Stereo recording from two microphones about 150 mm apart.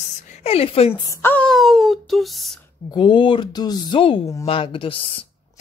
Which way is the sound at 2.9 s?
30° left (ahead or behind).